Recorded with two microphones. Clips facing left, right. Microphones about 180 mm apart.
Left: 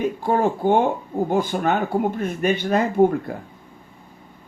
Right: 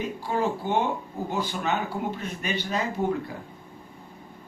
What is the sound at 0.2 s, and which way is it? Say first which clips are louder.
A man's voice: left 5 dB; 50° left (ahead or behind).